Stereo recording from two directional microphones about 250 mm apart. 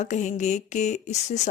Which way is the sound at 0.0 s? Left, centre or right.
Left.